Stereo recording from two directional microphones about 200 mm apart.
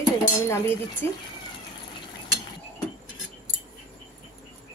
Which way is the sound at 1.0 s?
10° left (ahead or behind).